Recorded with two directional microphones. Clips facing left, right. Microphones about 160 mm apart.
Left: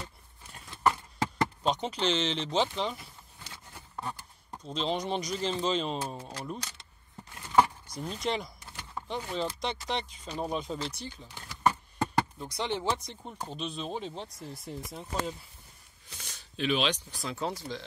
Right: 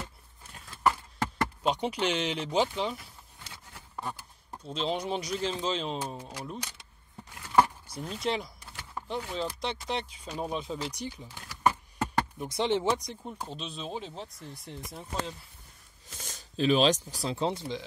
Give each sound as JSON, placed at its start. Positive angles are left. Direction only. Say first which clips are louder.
{"t": 1.6, "sound": "speech", "louder": "right 3 dB", "side_deg": -10}
{"t": 7.4, "sound": "a sound", "louder": "even", "side_deg": -5}
{"t": 9.6, "sound": "speech", "louder": "even", "side_deg": 0}
{"t": 10.9, "sound": "speech", "louder": "right 3 dB", "side_deg": -15}
{"t": 12.4, "sound": "speech", "louder": "right 5 dB", "side_deg": -20}
{"t": 13.1, "sound": "speech", "louder": "right 1 dB", "side_deg": -5}
{"t": 16.2, "sound": "speech", "louder": "right 5 dB", "side_deg": -45}
{"t": 17.3, "sound": "speech", "louder": "right 4 dB", "side_deg": -25}